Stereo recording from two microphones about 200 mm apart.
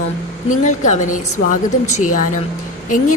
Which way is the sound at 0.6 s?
40° left (ahead or behind).